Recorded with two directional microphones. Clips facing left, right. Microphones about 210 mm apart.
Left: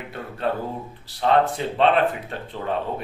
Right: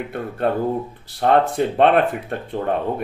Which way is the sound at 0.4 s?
55° right (ahead or behind).